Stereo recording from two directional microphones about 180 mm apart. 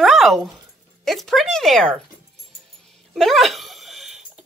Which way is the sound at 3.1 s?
Centre (ahead or behind).